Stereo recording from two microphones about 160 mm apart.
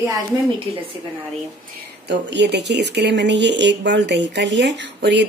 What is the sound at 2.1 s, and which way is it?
Speech, 90° right.